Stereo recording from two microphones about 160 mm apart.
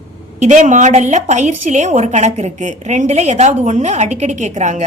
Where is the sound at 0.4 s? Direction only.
50° right (ahead or behind).